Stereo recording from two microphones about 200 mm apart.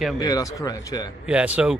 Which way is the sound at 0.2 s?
15° left (ahead or behind).